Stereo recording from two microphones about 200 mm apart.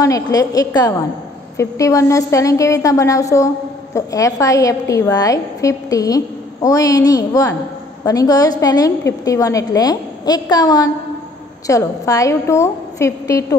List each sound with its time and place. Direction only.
0.0 s a woman's voice: 15° left (ahead or behind)